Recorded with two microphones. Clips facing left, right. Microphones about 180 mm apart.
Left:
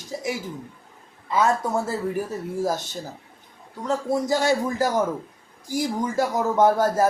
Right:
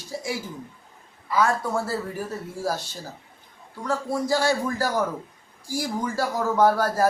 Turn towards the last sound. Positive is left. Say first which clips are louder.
# left 1 dB
turn(degrees=20)  # may be behind; listen again after turning